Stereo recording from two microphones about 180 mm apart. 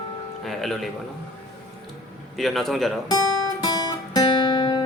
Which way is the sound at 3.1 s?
25° left (ahead or behind).